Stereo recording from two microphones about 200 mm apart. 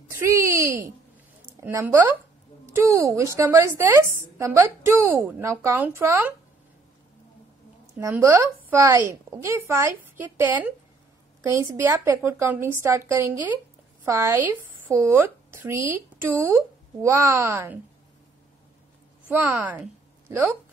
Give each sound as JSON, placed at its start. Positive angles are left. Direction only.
{"t": 0.2, "sound": "a sound", "side_deg": -15}
{"t": 1.6, "sound": "a woman's voice", "side_deg": -10}
{"t": 8.0, "sound": "a woman's voice", "side_deg": -10}
{"t": 19.2, "sound": "a woman's voice", "side_deg": -10}